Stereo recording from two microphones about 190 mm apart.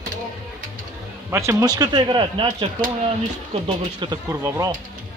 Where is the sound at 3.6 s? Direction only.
25° right (ahead or behind).